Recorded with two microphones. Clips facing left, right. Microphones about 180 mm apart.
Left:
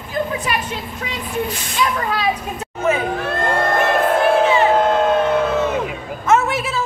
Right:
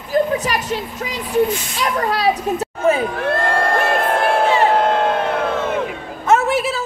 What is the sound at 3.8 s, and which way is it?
Music, 60° right (ahead or behind).